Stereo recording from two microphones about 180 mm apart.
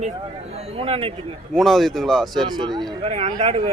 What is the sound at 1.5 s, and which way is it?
A man's voice, centre (ahead or behind).